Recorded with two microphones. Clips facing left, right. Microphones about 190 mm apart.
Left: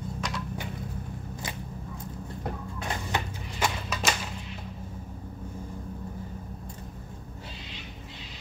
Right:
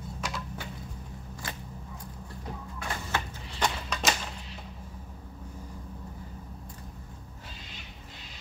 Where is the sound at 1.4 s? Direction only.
20° left (ahead or behind).